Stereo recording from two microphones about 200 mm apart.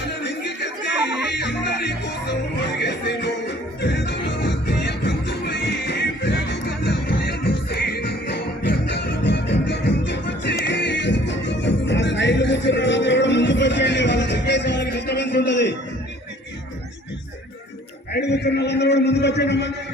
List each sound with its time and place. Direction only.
0.2 s music: 60° left (ahead or behind)
18.1 s a man's voice: 55° left (ahead or behind)